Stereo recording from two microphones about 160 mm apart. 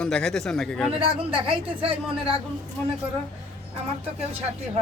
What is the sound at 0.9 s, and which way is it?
A woman's voice, 35° right (ahead or behind).